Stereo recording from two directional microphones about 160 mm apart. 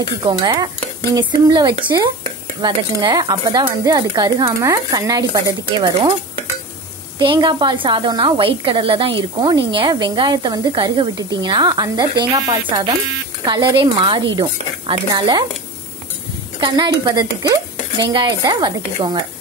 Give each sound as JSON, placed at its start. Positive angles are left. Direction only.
{"t": 0.2, "sound": "a woman's voice", "side_deg": -25}
{"t": 7.2, "sound": "a woman's voice", "side_deg": -30}
{"t": 16.5, "sound": "a woman's voice", "side_deg": -25}